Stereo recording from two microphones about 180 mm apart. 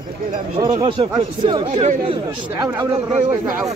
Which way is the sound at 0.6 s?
25° right (ahead or behind).